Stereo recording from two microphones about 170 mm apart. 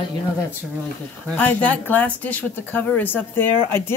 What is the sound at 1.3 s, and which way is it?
Speech, 10° left (ahead or behind).